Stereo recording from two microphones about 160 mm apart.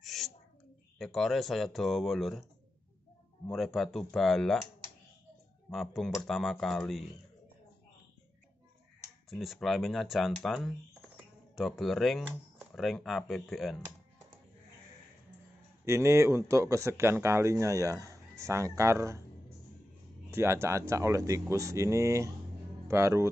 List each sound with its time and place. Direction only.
0.0 s a sound: centre (ahead or behind)
0.9 s speech: centre (ahead or behind)
3.5 s speech: centre (ahead or behind)
5.7 s speech: centre (ahead or behind)
9.3 s speech: centre (ahead or behind)
15.8 s speech: 15° right (ahead or behind)
20.2 s speech: 15° right (ahead or behind)